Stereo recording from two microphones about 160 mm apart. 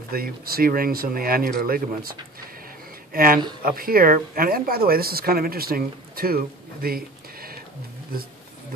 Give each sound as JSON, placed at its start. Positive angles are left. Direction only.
{"t": 0.1, "sound": "speech", "side_deg": -70}